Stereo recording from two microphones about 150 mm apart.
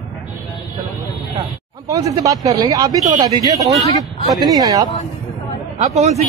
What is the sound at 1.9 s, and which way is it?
Speech, 25° right (ahead or behind).